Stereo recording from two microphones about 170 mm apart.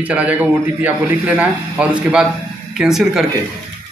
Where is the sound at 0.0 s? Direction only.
10° right (ahead or behind).